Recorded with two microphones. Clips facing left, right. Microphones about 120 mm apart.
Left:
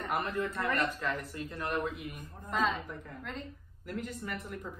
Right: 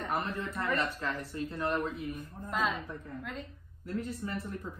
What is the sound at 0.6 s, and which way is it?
Speech, 30° right (ahead or behind).